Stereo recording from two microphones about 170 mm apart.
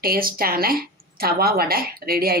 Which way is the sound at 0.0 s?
60° right (ahead or behind).